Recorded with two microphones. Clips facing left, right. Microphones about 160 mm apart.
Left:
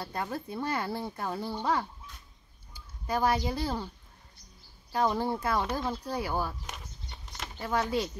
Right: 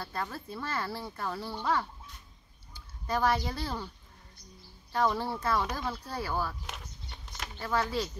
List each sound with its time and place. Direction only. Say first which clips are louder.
0.0 s speech: left 3 dB; 20° left (ahead or behind)
4.9 s speech: left 1 dB; 15° left (ahead or behind)
6.6 s a sound: even; centre (ahead or behind)
7.5 s speech: left 2 dB; 15° left (ahead or behind)